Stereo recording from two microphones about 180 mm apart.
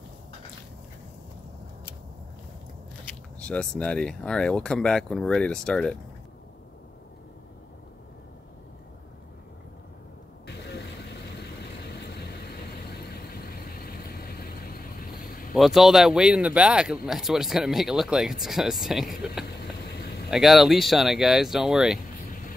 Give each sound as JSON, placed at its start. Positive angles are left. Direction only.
{"t": 3.3, "sound": "speech", "side_deg": 5}
{"t": 11.9, "sound": "vehicle", "side_deg": 65}
{"t": 15.5, "sound": "speech", "side_deg": 0}